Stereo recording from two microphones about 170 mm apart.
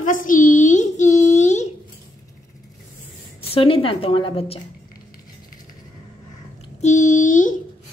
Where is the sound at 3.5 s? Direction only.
30° left (ahead or behind).